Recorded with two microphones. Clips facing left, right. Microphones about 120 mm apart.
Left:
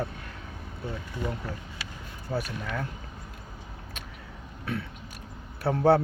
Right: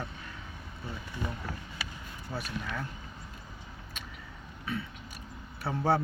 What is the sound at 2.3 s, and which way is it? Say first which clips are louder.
Speech: left 5 dB; 45° left (ahead or behind).